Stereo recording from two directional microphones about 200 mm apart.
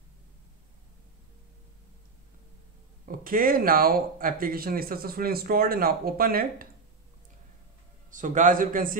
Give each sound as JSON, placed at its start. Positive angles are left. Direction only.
{"t": 3.1, "sound": "speech", "side_deg": -45}
{"t": 8.1, "sound": "a man's voice", "side_deg": -40}